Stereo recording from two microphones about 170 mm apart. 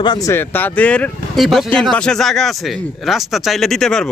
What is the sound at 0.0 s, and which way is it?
Speech, 25° left (ahead or behind).